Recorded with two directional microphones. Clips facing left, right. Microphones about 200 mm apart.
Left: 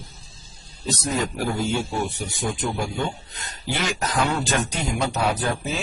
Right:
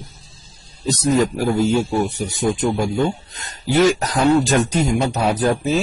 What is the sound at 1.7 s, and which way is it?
A man's voice, 40° right (ahead or behind).